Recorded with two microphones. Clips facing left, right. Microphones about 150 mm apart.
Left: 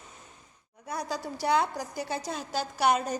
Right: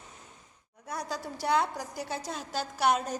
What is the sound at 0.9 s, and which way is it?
A woman's voice, centre (ahead or behind).